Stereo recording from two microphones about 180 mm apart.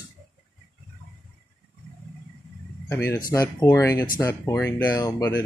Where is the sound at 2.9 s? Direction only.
15° left (ahead or behind).